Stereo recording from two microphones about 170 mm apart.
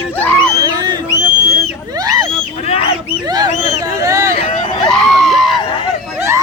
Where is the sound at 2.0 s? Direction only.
20° right (ahead or behind).